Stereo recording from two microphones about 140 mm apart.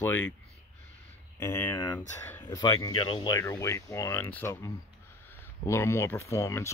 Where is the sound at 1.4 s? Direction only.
15° left (ahead or behind).